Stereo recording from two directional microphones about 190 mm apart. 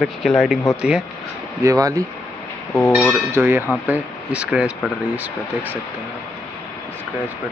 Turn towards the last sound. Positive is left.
turn(degrees=-10)  # may be behind; listen again after turning